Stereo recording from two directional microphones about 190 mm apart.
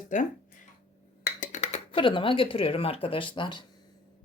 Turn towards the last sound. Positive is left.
turn(degrees=25)  # may be behind; listen again after turning